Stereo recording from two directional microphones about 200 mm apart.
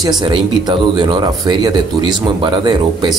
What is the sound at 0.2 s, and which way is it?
Speech, 20° right (ahead or behind).